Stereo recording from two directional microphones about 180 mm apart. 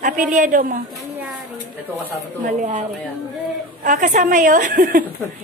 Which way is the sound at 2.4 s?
45° right (ahead or behind).